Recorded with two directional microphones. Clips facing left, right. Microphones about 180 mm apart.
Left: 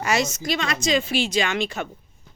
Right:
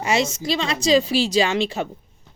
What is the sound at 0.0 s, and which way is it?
A woman's voice, 25° right (ahead or behind).